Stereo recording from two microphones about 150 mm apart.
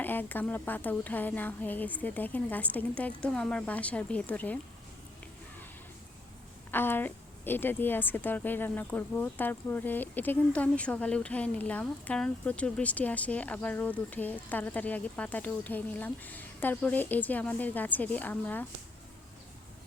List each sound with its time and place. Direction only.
0.0 s a woman's voice: 10° left (ahead or behind)
6.7 s a woman's voice: 15° left (ahead or behind)